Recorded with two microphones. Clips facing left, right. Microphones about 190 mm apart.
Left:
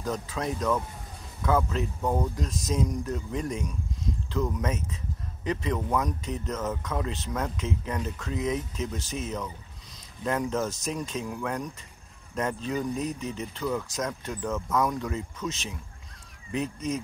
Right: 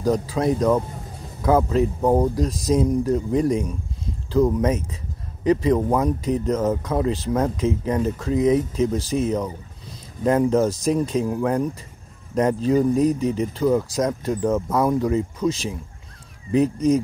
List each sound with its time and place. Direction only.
0.0 s speech: 35° right (ahead or behind)